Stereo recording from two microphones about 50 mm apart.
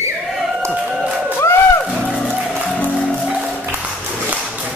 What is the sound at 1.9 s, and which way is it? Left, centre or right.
Music, left.